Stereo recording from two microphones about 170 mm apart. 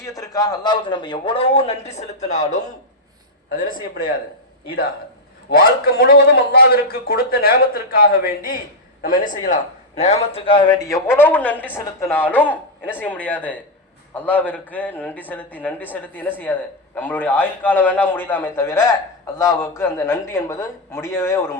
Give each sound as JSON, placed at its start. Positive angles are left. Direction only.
{"t": 0.0, "sound": "a man's voice", "side_deg": 20}
{"t": 3.5, "sound": "a man's voice", "side_deg": 55}
{"t": 5.5, "sound": "a man's voice", "side_deg": 65}
{"t": 11.0, "sound": "speech", "side_deg": 10}